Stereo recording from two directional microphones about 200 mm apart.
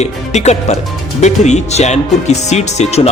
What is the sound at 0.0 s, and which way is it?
Speech, 35° left (ahead or behind).